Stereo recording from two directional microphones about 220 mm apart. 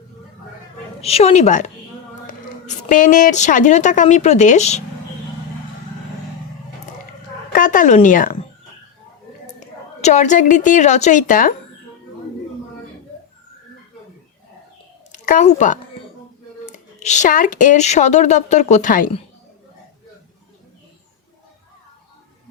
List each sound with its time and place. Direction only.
1.0 s speech: 30° left (ahead or behind)
7.5 s speech: 35° left (ahead or behind)
10.0 s speech: 30° left (ahead or behind)
15.1 s speech: 35° left (ahead or behind)